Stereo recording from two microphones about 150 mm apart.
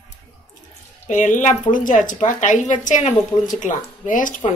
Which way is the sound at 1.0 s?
55° left (ahead or behind).